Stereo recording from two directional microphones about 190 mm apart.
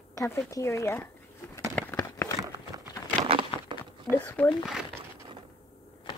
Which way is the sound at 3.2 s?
30° right (ahead or behind).